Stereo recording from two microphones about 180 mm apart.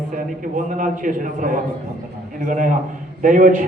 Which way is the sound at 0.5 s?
45° right (ahead or behind).